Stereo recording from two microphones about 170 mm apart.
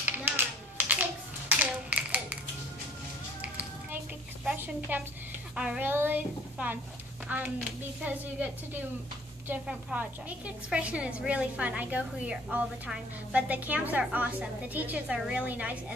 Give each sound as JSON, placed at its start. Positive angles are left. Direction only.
{"t": 0.0, "sound": "finger snapping", "side_deg": -10}
{"t": 4.5, "sound": "a woman's voice", "side_deg": -10}